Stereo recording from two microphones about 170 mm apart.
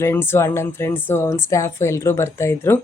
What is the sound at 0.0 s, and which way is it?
A woman's voice, 15° left (ahead or behind).